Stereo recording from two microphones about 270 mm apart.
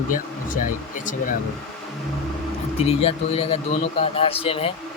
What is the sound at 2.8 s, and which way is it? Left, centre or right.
Speech, left.